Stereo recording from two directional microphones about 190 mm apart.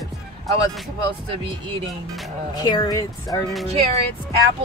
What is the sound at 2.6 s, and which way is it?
Speech, 20° left (ahead or behind).